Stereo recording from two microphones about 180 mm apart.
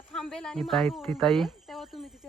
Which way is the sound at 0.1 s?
5° left (ahead or behind).